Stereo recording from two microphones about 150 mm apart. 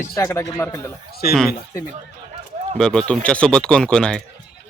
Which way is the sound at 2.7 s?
5° left (ahead or behind).